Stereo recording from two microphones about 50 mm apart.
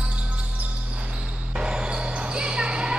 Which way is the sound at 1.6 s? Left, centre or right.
Centre.